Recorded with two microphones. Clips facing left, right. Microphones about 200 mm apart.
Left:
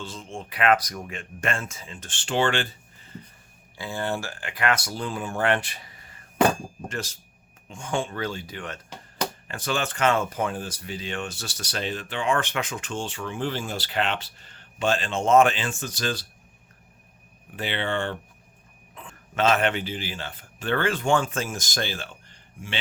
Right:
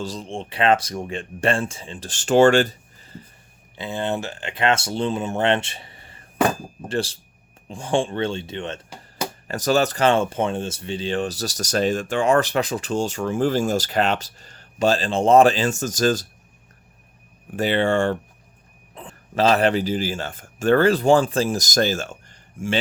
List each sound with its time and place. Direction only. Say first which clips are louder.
0.0 s speech: right 7 dB; 35° right (ahead or behind)
3.8 s speech: right 4 dB; 20° right (ahead or behind)
9.5 s speech: right 12 dB; 40° right (ahead or behind)
17.6 s speech: right 9 dB; 45° right (ahead or behind)
18.9 s a man's voice: right 4 dB; 35° right (ahead or behind)